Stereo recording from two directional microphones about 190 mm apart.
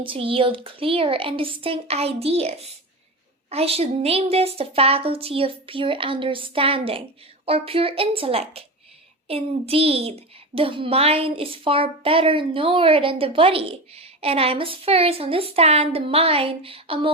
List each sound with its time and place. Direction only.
0.0 s a child's voice: 30° right (ahead or behind)